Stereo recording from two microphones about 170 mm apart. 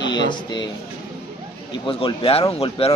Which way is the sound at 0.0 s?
25° left (ahead or behind).